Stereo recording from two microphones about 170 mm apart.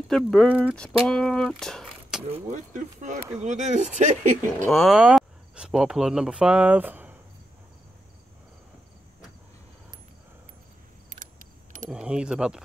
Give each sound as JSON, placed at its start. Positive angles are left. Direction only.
{"t": 0.1, "sound": "speech", "side_deg": 5}
{"t": 2.5, "sound": "speech", "side_deg": -45}
{"t": 4.6, "sound": "speech", "side_deg": 0}
{"t": 11.1, "sound": "keys jangling", "side_deg": -45}
{"t": 11.9, "sound": "speech", "side_deg": -5}